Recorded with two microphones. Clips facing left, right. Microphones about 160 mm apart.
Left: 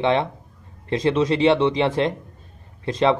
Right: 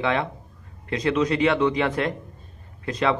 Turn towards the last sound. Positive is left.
turn(degrees=25)  # may be behind; listen again after turning